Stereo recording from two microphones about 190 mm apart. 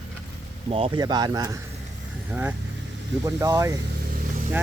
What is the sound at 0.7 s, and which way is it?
Speech, 30° right (ahead or behind).